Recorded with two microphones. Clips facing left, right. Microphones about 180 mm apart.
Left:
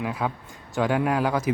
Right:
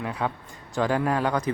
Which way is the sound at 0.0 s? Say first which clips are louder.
Left 1 dB; 5° left (ahead or behind).